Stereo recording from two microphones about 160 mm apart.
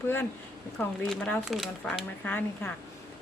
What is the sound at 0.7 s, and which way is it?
A woman's voice, 5° left (ahead or behind).